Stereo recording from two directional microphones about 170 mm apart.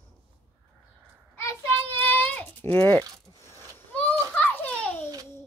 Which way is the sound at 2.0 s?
10° left (ahead or behind).